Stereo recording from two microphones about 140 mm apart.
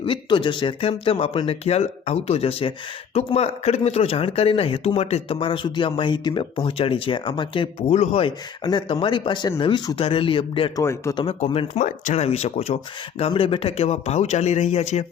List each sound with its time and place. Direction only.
0.0 s speech: 35° left (ahead or behind)
8.6 s speech: 35° left (ahead or behind)
10.8 s speech: 20° left (ahead or behind)
11.1 s speech: 35° left (ahead or behind)
11.8 s speech: 65° left (ahead or behind)